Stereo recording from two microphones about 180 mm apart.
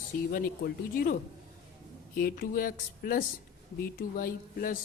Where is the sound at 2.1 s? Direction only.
55° left (ahead or behind).